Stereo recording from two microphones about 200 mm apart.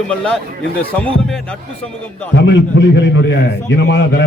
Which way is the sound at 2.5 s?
60° left (ahead or behind).